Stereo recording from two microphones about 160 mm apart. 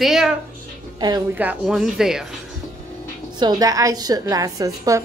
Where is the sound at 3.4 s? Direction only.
20° right (ahead or behind).